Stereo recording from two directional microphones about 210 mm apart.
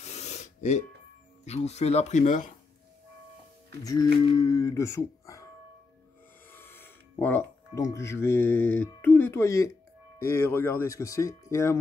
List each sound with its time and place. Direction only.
0.0 s filing: 30° left (ahead or behind)
1.4 s speech: 30° left (ahead or behind)
3.8 s speech: 15° left (ahead or behind)
6.5 s speech: 10° left (ahead or behind)